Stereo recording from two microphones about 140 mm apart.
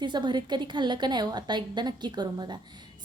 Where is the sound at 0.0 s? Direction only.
35° right (ahead or behind).